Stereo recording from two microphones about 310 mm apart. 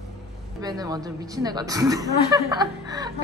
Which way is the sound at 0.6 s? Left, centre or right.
Centre.